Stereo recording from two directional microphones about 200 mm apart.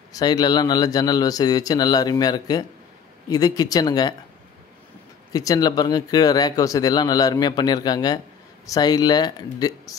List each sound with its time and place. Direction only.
0.1 s speech: 20° left (ahead or behind)
5.3 s speech: 15° left (ahead or behind)